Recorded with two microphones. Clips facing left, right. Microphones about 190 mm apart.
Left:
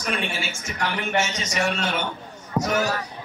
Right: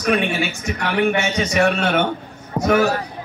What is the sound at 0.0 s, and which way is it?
A man's voice, 65° right (ahead or behind).